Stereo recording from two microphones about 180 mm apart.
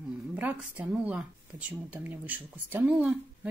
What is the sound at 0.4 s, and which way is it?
Speech, 10° right (ahead or behind).